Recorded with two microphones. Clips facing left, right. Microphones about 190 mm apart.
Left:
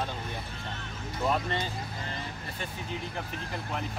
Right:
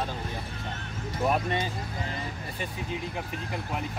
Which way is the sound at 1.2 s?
15° right (ahead or behind).